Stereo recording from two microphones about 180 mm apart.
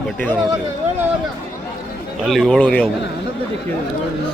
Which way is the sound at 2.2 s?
Centre (ahead or behind).